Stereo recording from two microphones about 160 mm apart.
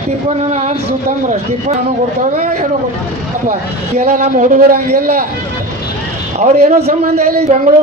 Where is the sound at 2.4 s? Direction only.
45° right (ahead or behind).